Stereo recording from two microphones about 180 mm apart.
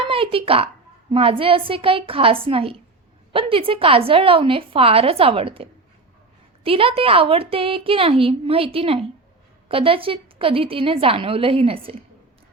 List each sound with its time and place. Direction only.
0.0 s a woman's voice: 30° right (ahead or behind)
6.7 s a woman's voice: 30° right (ahead or behind)